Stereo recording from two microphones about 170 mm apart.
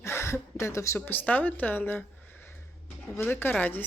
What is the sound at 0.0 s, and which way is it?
A woman's voice, 15° left (ahead or behind).